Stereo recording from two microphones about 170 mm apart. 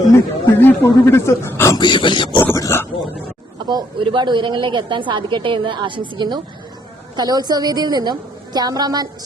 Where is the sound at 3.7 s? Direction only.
30° right (ahead or behind).